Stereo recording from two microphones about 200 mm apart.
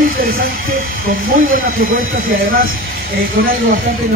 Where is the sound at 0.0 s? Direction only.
45° right (ahead or behind).